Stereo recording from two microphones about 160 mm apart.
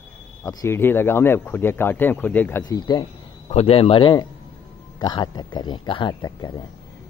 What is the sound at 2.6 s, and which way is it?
Speech, 25° left (ahead or behind).